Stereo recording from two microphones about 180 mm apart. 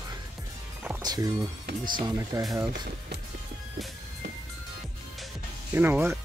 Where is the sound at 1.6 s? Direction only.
50° right (ahead or behind).